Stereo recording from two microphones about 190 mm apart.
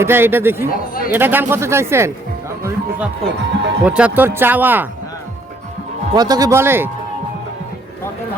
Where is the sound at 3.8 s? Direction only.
5° right (ahead or behind).